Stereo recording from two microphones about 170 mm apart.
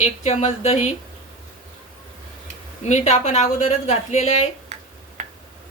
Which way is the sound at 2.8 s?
45° left (ahead or behind).